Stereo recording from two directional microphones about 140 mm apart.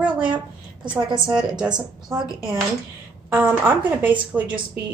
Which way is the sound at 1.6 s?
30° right (ahead or behind).